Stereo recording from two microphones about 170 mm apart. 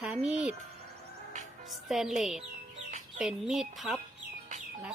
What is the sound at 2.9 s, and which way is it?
Chicken, 45° right (ahead or behind).